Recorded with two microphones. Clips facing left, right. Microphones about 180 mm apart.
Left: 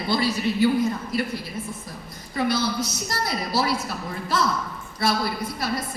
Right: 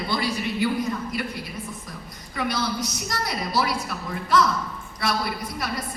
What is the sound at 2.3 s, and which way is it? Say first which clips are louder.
Speech: left 3 dB; 30° left (ahead or behind).